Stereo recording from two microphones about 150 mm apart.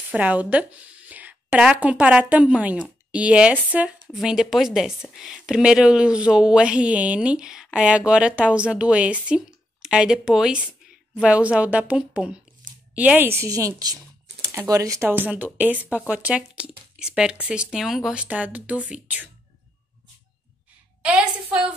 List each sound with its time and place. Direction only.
0.1 s a woman's voice: 10° right (ahead or behind)
21.0 s a woman's voice: 10° right (ahead or behind)